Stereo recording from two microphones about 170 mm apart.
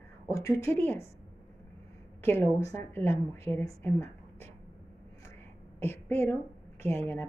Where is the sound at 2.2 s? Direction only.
15° left (ahead or behind).